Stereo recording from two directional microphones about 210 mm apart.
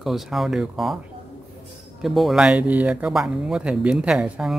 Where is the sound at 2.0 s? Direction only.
Centre (ahead or behind).